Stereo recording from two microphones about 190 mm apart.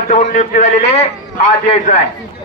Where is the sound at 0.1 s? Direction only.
40° left (ahead or behind).